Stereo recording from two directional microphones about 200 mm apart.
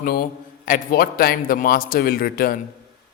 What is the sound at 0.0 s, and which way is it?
A man's voice, 45° left (ahead or behind).